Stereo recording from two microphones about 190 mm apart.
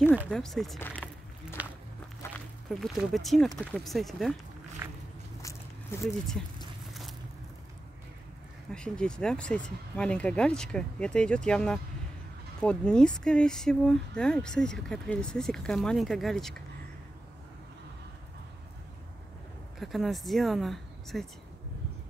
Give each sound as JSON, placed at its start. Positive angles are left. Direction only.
{"t": 0.3, "sound": "speech", "side_deg": 0}
{"t": 0.7, "sound": "a sound", "side_deg": 10}
{"t": 2.7, "sound": "speech", "side_deg": 0}
{"t": 4.8, "sound": "walk", "side_deg": -10}
{"t": 5.4, "sound": "biting", "side_deg": 15}
{"t": 6.0, "sound": "speech", "side_deg": 0}
{"t": 6.9, "sound": "a sound", "side_deg": 0}
{"t": 8.7, "sound": "speech", "side_deg": 5}
{"t": 19.8, "sound": "speech", "side_deg": 0}